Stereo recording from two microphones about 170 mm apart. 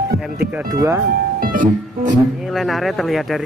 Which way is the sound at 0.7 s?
20° right (ahead or behind).